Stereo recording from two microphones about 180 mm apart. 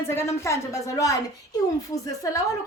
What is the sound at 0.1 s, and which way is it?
A woman's voice, 15° left (ahead or behind).